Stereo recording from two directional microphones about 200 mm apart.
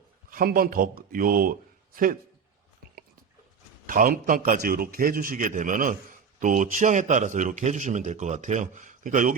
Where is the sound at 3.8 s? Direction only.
45° right (ahead or behind).